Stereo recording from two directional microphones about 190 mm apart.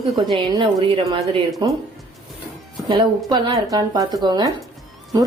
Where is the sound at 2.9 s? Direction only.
25° right (ahead or behind).